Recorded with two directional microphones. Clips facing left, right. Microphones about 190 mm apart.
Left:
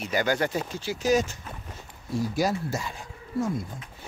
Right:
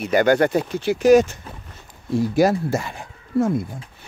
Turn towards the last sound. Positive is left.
turn(degrees=-60)  # may be behind; listen again after turning